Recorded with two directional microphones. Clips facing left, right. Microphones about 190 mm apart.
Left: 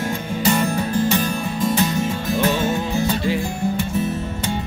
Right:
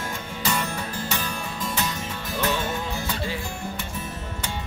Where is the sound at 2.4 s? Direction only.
25° left (ahead or behind).